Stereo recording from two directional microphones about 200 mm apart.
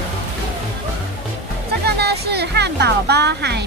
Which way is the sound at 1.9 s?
55° right (ahead or behind).